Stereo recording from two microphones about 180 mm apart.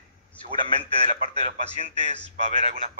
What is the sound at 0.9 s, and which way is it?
Speech, 35° right (ahead or behind).